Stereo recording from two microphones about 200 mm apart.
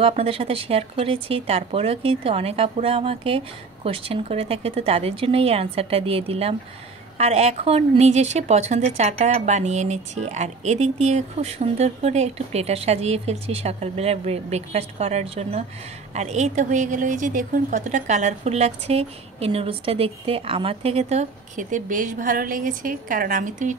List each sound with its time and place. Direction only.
0.0 s speech: 30° right (ahead or behind)